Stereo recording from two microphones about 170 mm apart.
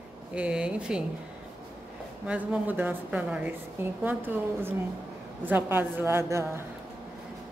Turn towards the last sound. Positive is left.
turn(degrees=-15)  # may be behind; listen again after turning